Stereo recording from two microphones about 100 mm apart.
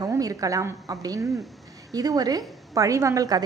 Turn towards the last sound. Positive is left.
turn(degrees=-35)  # may be behind; listen again after turning